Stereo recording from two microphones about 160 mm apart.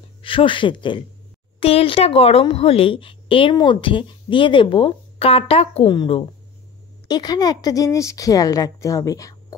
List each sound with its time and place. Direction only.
0.2 s a woman's voice: 35° left (ahead or behind)